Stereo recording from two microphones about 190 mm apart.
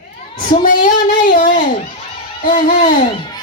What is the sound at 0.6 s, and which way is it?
A child's voice, 45° left (ahead or behind).